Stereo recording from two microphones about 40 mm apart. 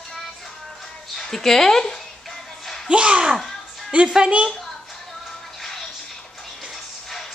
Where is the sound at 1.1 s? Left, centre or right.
Centre.